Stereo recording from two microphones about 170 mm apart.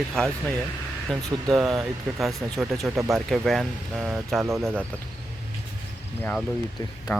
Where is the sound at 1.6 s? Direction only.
Centre (ahead or behind).